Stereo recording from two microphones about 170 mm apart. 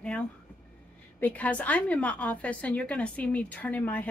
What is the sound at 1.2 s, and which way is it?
A woman's voice, 10° left (ahead or behind).